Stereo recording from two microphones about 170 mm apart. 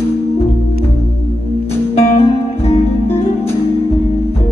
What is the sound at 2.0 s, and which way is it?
Music, 40° left (ahead or behind).